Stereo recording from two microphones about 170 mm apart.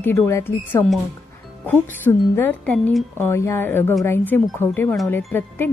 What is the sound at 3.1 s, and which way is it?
A woman's voice, 15° left (ahead or behind).